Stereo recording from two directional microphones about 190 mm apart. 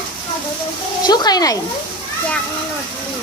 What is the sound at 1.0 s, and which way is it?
Speech, 20° left (ahead or behind).